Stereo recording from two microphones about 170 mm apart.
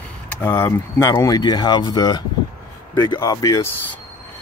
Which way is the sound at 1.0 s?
20° left (ahead or behind).